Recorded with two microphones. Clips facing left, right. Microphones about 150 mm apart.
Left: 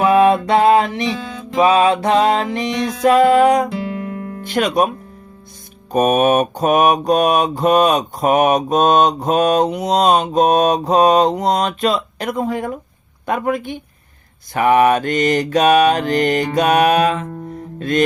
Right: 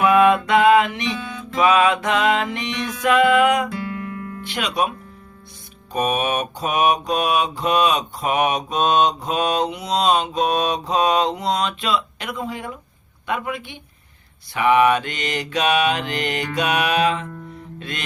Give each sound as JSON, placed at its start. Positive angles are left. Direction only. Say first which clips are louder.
{"t": 0.0, "sound": "music", "louder": "left 3 dB", "side_deg": 30}
{"t": 4.4, "sound": "mantra", "louder": "left 7 dB", "side_deg": 45}
{"t": 17.7, "sound": "music", "louder": "left 15 dB", "side_deg": 45}